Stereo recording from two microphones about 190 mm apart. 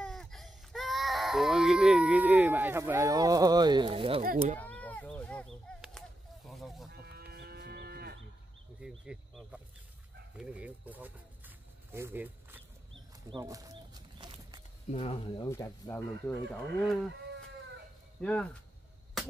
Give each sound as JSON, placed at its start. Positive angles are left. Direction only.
{"t": 0.0, "sound": "speech", "side_deg": 5}
{"t": 4.2, "sound": "speech", "side_deg": -50}
{"t": 4.6, "sound": "a sound", "side_deg": 5}
{"t": 6.9, "sound": "moo", "side_deg": -55}
{"t": 8.8, "sound": "speech", "side_deg": -5}
{"t": 10.3, "sound": "a sound", "side_deg": -5}
{"t": 14.9, "sound": "speech", "side_deg": 35}
{"t": 15.4, "sound": "speech", "side_deg": 15}
{"t": 18.2, "sound": "speech", "side_deg": 5}